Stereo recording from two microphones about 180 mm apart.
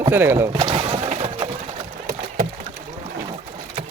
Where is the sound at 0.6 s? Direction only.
30° right (ahead or behind).